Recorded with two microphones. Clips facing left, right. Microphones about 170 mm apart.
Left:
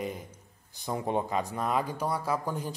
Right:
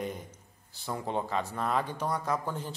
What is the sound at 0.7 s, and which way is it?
Speech, 15° left (ahead or behind).